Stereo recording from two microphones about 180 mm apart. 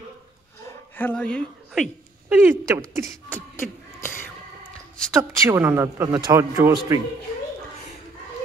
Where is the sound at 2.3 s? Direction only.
10° right (ahead or behind).